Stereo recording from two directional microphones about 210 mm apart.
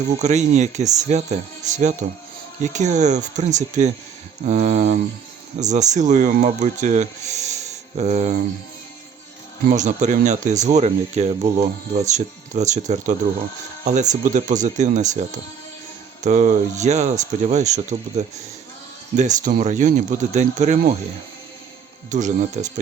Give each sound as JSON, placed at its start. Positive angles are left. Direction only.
{"t": 0.2, "sound": "speech", "side_deg": -35}
{"t": 9.6, "sound": "speech", "side_deg": -35}
{"t": 22.1, "sound": "speech", "side_deg": -35}